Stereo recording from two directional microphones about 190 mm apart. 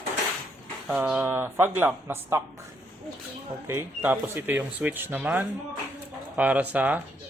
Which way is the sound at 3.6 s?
10° right (ahead or behind).